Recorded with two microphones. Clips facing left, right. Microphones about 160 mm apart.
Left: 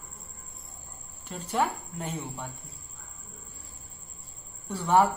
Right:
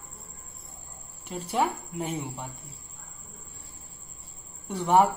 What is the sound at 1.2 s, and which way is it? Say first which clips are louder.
Speech: right 1 dB; 10° right (ahead or behind).